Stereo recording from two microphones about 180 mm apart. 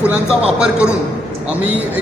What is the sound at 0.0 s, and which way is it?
Speech, 5° right (ahead or behind).